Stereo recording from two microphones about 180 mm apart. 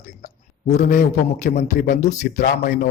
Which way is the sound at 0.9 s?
45° left (ahead or behind).